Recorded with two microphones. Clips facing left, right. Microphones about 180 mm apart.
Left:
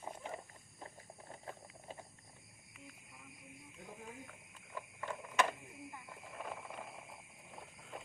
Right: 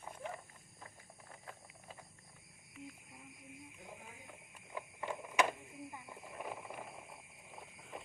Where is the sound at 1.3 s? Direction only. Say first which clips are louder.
Left 4 dB; 30° left (ahead or behind).